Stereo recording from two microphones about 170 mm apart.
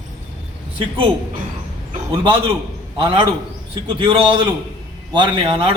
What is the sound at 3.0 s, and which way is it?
A man's voice, 30° right (ahead or behind).